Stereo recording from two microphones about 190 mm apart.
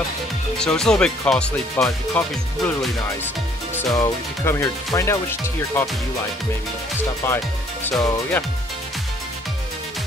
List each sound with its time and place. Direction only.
0.6 s speech: 5° left (ahead or behind)
7.2 s speech: 10° left (ahead or behind)